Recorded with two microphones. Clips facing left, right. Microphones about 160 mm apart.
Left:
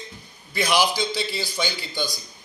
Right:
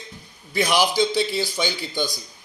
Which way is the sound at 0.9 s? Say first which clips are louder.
Right 6 dB; 15° right (ahead or behind).